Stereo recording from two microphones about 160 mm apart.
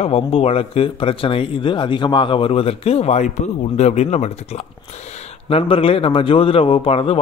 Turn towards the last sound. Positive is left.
turn(degrees=35)  # may be behind; listen again after turning